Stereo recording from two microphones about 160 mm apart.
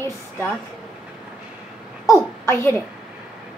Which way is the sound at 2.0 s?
15° left (ahead or behind).